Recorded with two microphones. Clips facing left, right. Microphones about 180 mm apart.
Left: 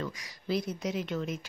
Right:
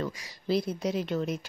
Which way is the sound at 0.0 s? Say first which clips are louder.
Right 3 dB; 30° right (ahead or behind).